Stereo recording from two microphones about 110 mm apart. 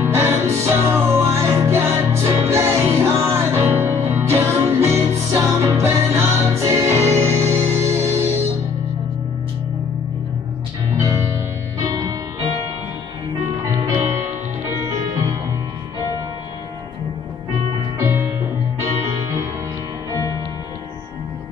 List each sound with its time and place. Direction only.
0.0 s music: 25° right (ahead or behind)
11.8 s music: 35° right (ahead or behind)
13.7 s music: 30° right (ahead or behind)
17.9 s music: 20° right (ahead or behind)